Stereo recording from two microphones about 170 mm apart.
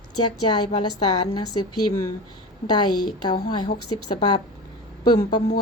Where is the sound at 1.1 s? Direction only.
25° left (ahead or behind).